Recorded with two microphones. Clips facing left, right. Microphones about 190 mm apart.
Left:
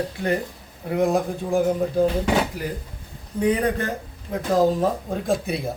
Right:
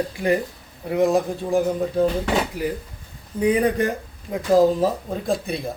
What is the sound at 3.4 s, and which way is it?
Speech, 10° right (ahead or behind).